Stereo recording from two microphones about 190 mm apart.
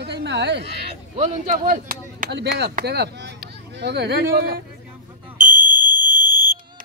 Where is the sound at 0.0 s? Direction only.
60° right (ahead or behind).